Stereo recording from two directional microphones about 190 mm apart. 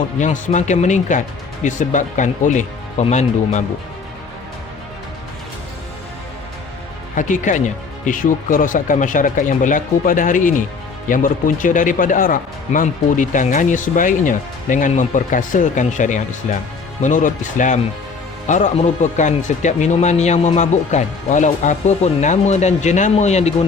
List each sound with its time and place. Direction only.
0.2 s speech: 40° left (ahead or behind)
7.2 s speech: 40° left (ahead or behind)